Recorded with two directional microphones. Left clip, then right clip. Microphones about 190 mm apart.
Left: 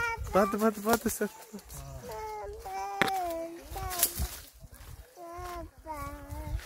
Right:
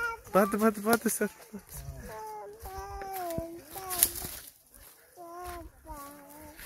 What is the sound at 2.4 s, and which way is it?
Chicken, 35° left (ahead or behind).